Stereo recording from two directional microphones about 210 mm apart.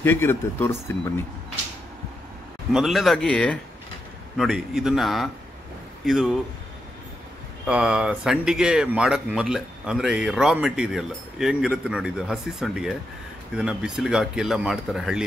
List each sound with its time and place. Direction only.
0.0 s speech: 10° left (ahead or behind)
2.7 s speech: centre (ahead or behind)
7.6 s speech: 5° right (ahead or behind)